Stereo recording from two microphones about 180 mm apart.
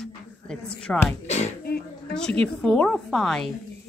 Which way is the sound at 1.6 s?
60° left (ahead or behind).